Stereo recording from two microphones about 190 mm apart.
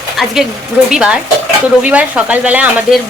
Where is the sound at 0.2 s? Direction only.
Centre (ahead or behind).